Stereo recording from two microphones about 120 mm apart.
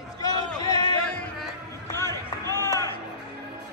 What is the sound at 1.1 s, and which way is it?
Music, 10° left (ahead or behind).